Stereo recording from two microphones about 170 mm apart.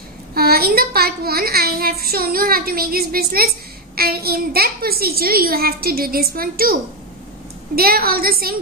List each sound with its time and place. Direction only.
0.3 s a child's voice: 65° right (ahead or behind)